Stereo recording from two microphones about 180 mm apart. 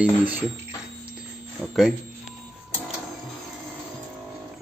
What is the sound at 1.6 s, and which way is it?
Speech, centre (ahead or behind).